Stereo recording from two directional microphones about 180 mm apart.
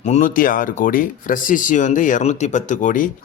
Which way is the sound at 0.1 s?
50° left (ahead or behind).